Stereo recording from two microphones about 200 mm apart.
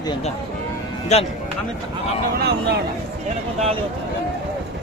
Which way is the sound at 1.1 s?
35° left (ahead or behind).